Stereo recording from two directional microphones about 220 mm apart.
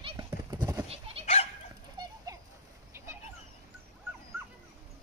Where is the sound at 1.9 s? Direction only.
15° right (ahead or behind).